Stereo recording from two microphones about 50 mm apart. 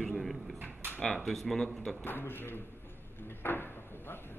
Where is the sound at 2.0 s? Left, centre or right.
Left.